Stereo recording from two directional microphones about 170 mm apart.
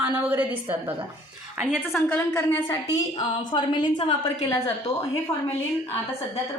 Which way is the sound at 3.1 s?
25° left (ahead or behind).